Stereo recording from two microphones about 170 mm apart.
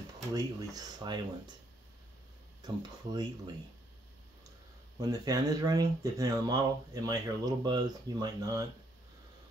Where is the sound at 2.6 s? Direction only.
25° right (ahead or behind).